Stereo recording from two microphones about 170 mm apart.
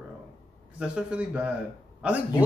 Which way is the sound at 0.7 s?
5° right (ahead or behind).